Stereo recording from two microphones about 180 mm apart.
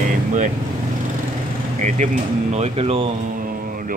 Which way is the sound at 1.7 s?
45° right (ahead or behind).